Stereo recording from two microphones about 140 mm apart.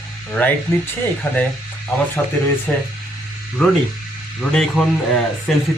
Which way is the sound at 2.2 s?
5° left (ahead or behind).